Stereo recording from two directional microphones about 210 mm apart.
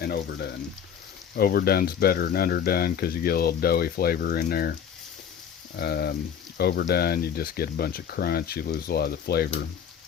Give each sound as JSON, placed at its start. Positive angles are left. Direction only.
{"t": 0.0, "sound": "speech", "side_deg": 50}
{"t": 5.7, "sound": "speech", "side_deg": 50}